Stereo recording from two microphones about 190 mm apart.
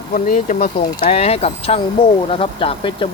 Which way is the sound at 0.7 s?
20° left (ahead or behind).